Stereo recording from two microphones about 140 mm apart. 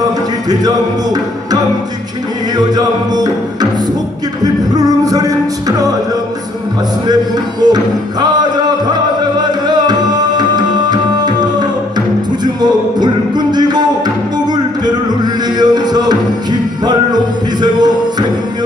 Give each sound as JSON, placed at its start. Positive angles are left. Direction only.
{"t": 0.0, "sound": "music", "side_deg": -25}
{"t": 4.7, "sound": "music", "side_deg": -25}
{"t": 7.6, "sound": "music", "side_deg": -30}
{"t": 12.6, "sound": "music", "side_deg": -30}